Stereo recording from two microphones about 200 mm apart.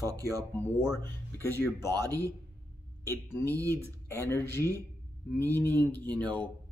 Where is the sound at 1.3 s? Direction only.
10° left (ahead or behind).